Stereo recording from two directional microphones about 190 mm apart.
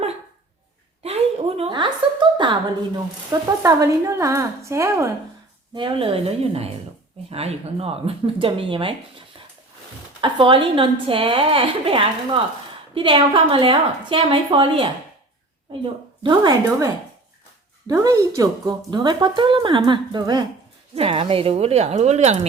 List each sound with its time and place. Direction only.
1.0 s a sound: 30° right (ahead or behind)
3.6 s a woman's voice: 15° right (ahead or behind)
5.7 s a woman's voice: 25° right (ahead or behind)